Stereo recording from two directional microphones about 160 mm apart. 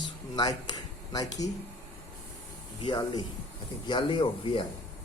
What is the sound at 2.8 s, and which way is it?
Speech, 25° left (ahead or behind).